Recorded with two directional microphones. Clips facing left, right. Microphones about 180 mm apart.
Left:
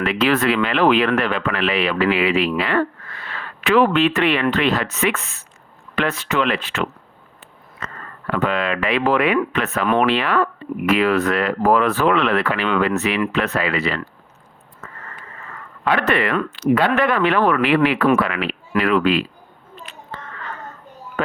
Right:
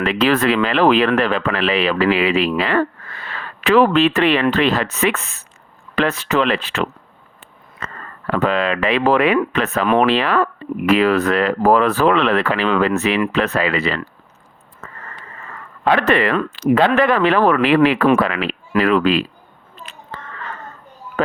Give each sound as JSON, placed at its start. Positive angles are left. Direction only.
{"t": 0.0, "sound": "speech", "side_deg": -30}
{"t": 3.6, "sound": "speech", "side_deg": -35}
{"t": 8.3, "sound": "speech", "side_deg": -35}
{"t": 15.8, "sound": "speech", "side_deg": -30}